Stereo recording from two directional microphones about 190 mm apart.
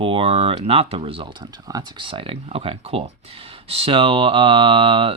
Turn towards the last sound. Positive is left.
turn(degrees=-25)  # may be behind; listen again after turning